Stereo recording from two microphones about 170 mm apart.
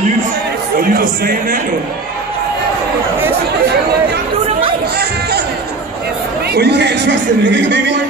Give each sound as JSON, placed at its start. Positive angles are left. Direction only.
{"t": 0.7, "sound": "a man's voice", "side_deg": -60}
{"t": 6.5, "sound": "speech", "side_deg": -80}